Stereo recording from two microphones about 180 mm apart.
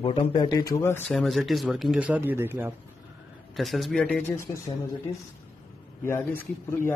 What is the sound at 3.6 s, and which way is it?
Speech, centre (ahead or behind).